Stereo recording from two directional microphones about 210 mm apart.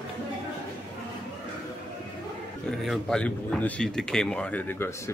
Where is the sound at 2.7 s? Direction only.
Centre (ahead or behind).